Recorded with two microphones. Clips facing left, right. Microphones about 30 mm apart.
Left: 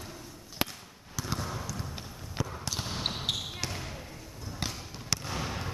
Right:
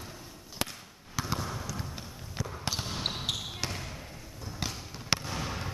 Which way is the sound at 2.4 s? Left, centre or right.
Centre.